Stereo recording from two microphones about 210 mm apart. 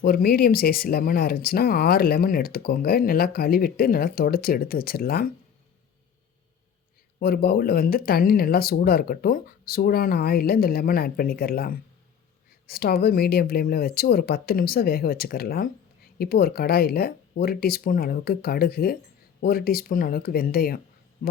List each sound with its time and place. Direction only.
0.0 s speech: 45° left (ahead or behind)
7.2 s speech: 45° left (ahead or behind)